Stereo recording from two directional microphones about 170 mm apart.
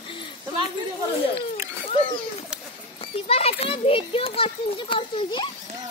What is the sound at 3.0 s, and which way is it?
Children playing, 35° left (ahead or behind).